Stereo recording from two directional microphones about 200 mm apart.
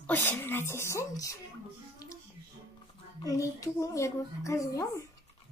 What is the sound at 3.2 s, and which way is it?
A woman's voice, 15° left (ahead or behind).